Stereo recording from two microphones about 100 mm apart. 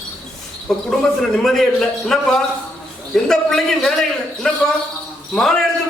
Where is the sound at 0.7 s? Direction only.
5° left (ahead or behind).